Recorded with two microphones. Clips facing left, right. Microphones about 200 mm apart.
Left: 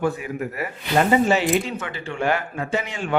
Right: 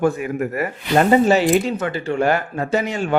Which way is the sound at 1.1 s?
40° right (ahead or behind).